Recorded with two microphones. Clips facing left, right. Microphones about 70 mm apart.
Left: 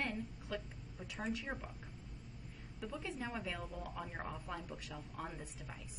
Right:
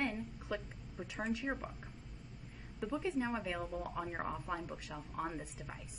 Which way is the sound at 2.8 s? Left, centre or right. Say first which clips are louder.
Right 7 dB; centre.